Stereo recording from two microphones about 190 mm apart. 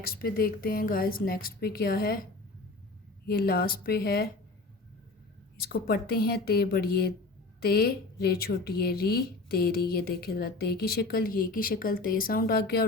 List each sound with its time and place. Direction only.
0.0 s a woman's voice: 50° left (ahead or behind)
3.2 s a woman's voice: 55° left (ahead or behind)
5.5 s a woman's voice: 55° left (ahead or behind)